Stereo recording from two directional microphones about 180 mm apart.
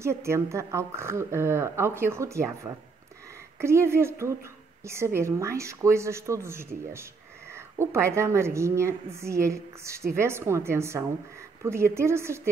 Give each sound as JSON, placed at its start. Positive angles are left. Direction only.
{"t": 0.0, "sound": "a woman's voice", "side_deg": -15}